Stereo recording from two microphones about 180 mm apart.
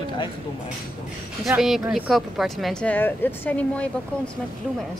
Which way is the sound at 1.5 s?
Centre (ahead or behind).